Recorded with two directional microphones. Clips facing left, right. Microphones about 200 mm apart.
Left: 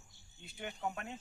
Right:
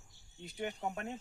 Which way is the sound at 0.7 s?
35° right (ahead or behind).